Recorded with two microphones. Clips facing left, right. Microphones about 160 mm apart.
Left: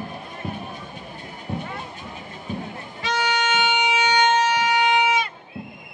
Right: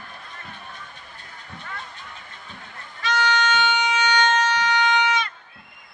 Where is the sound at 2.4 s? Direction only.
25° left (ahead or behind).